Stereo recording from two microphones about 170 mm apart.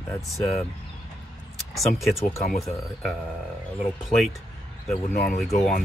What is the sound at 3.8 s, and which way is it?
Speech, 5° right (ahead or behind).